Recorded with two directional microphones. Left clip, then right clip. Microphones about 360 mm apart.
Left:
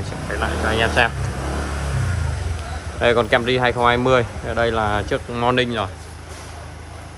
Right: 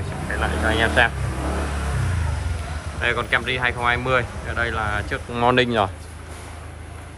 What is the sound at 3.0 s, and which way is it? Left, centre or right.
Speech, centre.